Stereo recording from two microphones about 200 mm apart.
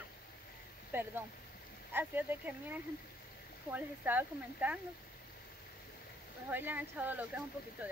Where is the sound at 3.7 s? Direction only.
10° right (ahead or behind).